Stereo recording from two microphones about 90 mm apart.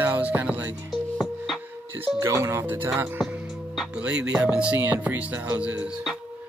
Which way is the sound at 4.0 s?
10° right (ahead or behind).